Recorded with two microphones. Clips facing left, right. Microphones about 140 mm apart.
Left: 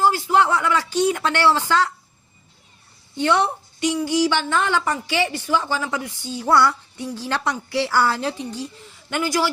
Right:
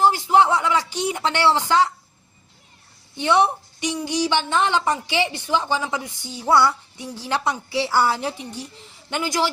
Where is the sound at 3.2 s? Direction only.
15° right (ahead or behind).